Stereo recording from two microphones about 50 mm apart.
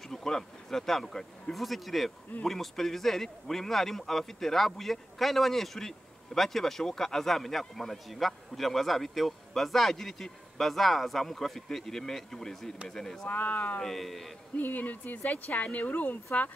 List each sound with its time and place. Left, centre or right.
0.1 s a man's voice: centre
13.3 s speech: left
13.7 s a man's voice: centre
14.6 s speech: left